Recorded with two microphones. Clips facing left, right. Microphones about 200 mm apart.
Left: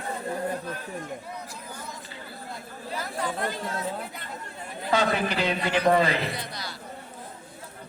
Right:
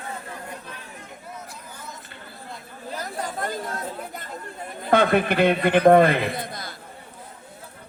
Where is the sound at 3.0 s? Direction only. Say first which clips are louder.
Even; 45° right (ahead or behind).